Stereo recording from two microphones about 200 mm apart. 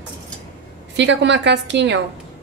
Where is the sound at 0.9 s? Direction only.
60° right (ahead or behind).